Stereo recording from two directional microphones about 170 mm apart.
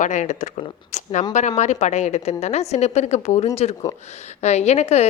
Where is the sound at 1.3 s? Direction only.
45° left (ahead or behind).